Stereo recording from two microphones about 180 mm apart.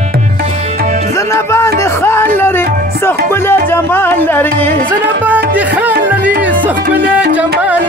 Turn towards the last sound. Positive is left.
turn(degrees=-10)  # may be behind; listen again after turning